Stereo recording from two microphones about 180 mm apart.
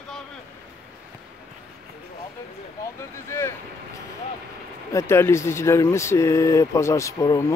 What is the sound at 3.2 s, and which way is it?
Speech, 15° left (ahead or behind).